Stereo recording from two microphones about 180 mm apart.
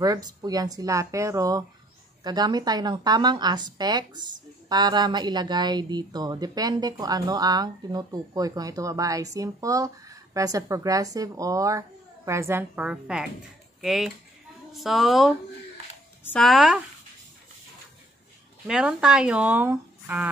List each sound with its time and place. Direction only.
0.0 s speech: 20° right (ahead or behind); by 16.8 s centre (ahead or behind)
18.7 s speech: 5° right (ahead or behind)